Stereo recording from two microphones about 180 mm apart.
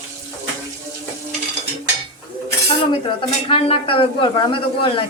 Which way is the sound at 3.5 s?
30° left (ahead or behind).